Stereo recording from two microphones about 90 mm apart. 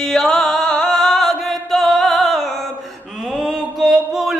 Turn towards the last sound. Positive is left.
turn(degrees=0)  # may be behind; listen again after turning